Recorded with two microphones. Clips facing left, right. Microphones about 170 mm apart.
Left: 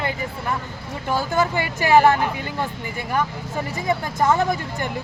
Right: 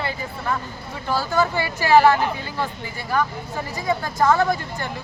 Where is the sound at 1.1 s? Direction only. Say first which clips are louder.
Even; 15° left (ahead or behind).